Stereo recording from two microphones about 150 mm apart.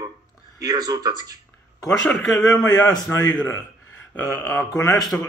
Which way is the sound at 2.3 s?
25° left (ahead or behind).